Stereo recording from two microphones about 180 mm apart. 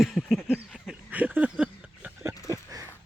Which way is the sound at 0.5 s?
5° right (ahead or behind).